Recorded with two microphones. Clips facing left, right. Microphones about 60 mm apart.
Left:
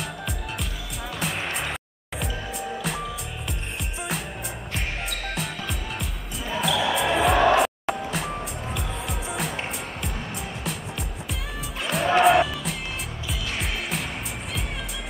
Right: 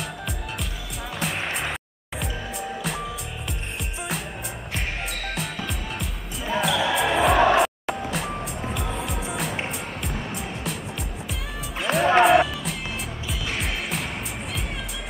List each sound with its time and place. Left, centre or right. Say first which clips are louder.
1.2 s music: right 1 dB; centre
4.7 s music: right 1 dB; centre